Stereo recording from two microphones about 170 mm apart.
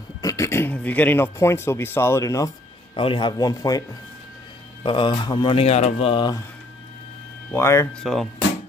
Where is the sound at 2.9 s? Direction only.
30° left (ahead or behind).